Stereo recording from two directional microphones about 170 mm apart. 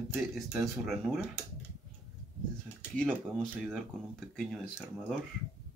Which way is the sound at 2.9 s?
5° left (ahead or behind).